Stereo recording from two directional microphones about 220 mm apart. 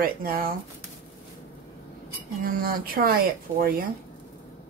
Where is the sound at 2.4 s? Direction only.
40° right (ahead or behind).